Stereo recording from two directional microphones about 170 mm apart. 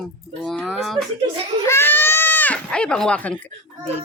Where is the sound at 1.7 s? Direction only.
15° left (ahead or behind).